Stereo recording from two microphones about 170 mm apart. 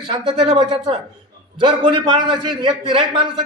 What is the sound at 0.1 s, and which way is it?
A man's voice, 30° right (ahead or behind).